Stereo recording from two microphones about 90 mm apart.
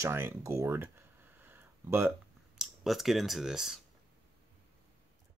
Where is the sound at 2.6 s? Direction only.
5° right (ahead or behind).